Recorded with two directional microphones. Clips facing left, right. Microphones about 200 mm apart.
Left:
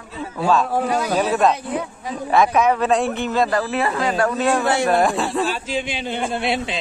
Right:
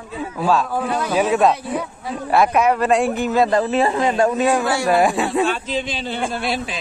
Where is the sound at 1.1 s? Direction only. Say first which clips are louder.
Right 3 dB; 10° right (ahead or behind).